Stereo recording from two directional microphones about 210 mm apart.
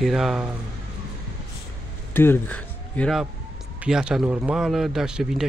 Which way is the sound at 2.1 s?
10° left (ahead or behind).